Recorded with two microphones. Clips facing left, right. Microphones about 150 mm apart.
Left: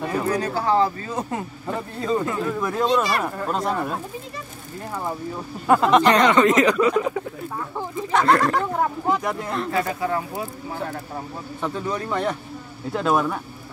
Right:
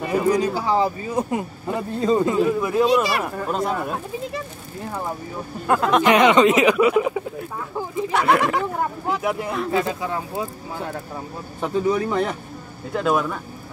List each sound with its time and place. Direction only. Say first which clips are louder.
0.1 s speech: right 6 dB; 15° right (ahead or behind)
5.7 s speech: left 1 dB; centre (ahead or behind)
6.2 s speech: right 2 dB; 15° right (ahead or behind)
9.7 s speech: even; 20° right (ahead or behind)
11.6 s speech: right 6 dB; 10° right (ahead or behind)